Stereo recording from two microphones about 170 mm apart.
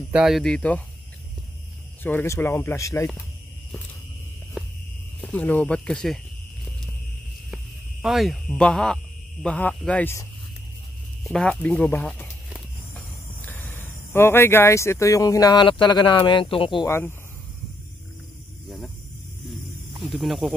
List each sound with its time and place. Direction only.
0.1 s speech: 5° right (ahead or behind)
2.0 s speech: 15° left (ahead or behind)
5.2 s speech: 10° left (ahead or behind)
7.5 s a sound: centre (ahead or behind)
8.5 s speech: 5° left (ahead or behind)
11.2 s speech: 5° left (ahead or behind); by 16.8 s 30° left (ahead or behind)
16.8 s speech: 15° left (ahead or behind)
20.0 s speech: centre (ahead or behind)